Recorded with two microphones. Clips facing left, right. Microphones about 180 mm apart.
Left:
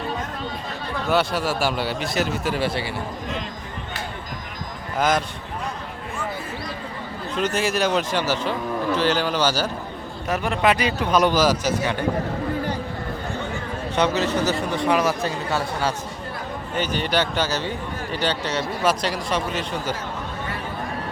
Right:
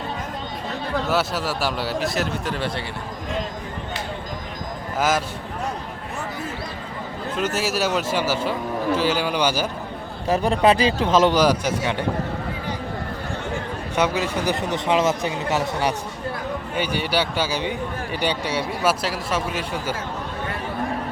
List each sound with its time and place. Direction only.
1.1 s speech: centre (ahead or behind)
4.9 s speech: 5° right (ahead or behind)
7.3 s speech: 5° right (ahead or behind)
10.2 s speech: 30° right (ahead or behind)
13.9 s speech: 10° right (ahead or behind)